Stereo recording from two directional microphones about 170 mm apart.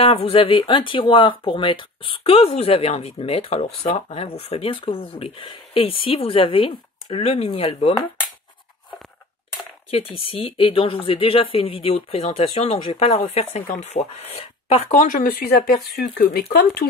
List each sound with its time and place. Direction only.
0.0 s speech: 35° left (ahead or behind)
9.8 s speech: 35° left (ahead or behind); by 16.8 s 65° left (ahead or behind)